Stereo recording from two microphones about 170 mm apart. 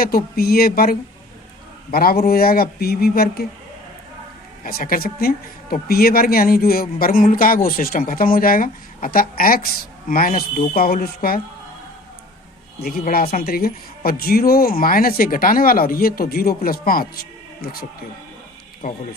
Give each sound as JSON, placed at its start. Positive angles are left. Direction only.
{"t": 0.3, "sound": "speech", "side_deg": 60}
{"t": 4.6, "sound": "speech", "side_deg": 55}
{"t": 12.8, "sound": "speech", "side_deg": 60}